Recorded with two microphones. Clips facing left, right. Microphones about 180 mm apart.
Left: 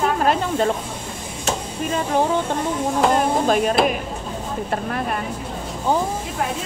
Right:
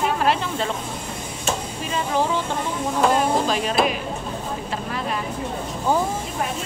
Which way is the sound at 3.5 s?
50° left (ahead or behind).